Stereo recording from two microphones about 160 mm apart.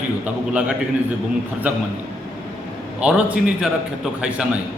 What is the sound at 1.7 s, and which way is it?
Speech, 10° right (ahead or behind).